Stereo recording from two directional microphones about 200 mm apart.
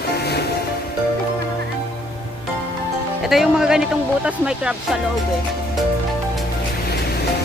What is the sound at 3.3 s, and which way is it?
A woman's voice, centre (ahead or behind).